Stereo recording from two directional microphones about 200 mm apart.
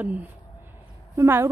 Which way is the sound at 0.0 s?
10° right (ahead or behind).